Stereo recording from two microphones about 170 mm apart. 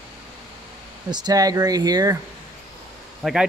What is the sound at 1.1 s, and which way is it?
Speech, 25° right (ahead or behind).